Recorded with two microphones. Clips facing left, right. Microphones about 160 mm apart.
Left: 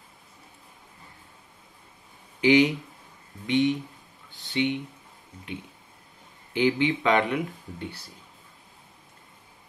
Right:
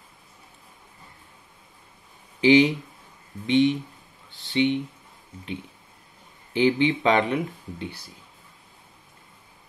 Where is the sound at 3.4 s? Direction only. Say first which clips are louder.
Right 3 dB; 25° right (ahead or behind).